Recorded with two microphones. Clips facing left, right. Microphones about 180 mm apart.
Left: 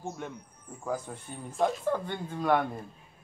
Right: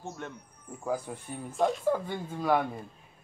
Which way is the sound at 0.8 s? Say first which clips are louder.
Right 2 dB; 10° right (ahead or behind).